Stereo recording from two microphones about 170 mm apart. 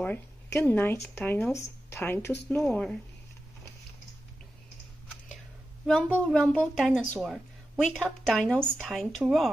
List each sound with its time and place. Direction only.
0.0 s a woman's voice: 10° left (ahead or behind)
5.9 s a woman's voice: 5° left (ahead or behind)